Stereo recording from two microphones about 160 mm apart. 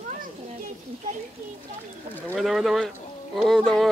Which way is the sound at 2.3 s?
Centre (ahead or behind).